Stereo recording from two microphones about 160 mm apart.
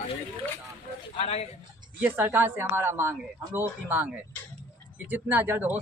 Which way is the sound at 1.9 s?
15° right (ahead or behind).